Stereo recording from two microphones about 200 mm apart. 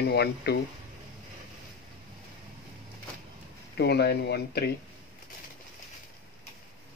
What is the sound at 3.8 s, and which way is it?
Speech, 55° left (ahead or behind).